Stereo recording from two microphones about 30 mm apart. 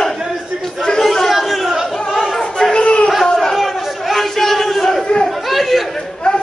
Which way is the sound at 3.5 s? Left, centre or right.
Centre.